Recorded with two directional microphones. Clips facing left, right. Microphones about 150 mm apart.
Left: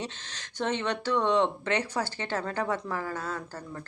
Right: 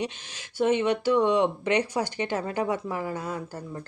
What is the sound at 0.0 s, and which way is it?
A woman's voice, 10° right (ahead or behind).